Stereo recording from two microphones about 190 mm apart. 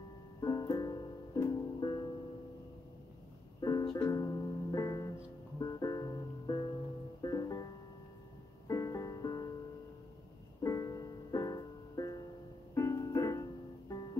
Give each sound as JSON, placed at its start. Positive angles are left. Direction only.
{"t": 0.4, "sound": "music", "side_deg": 20}
{"t": 3.6, "sound": "music", "side_deg": 20}
{"t": 8.6, "sound": "music", "side_deg": 20}
{"t": 10.6, "sound": "music", "side_deg": 15}